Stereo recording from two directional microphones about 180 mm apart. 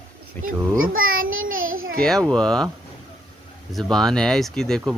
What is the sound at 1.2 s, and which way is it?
Child singing, 90° right.